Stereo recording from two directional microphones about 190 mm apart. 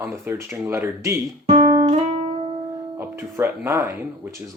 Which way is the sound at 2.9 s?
15° right (ahead or behind).